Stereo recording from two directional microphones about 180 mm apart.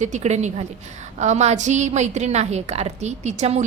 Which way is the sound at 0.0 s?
40° right (ahead or behind).